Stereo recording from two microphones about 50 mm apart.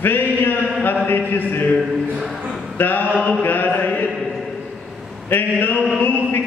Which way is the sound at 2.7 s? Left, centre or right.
Left.